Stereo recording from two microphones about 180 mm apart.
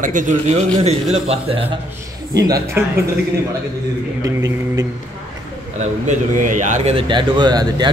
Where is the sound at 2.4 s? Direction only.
20° right (ahead or behind).